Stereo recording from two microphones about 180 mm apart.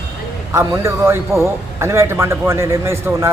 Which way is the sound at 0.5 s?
15° right (ahead or behind).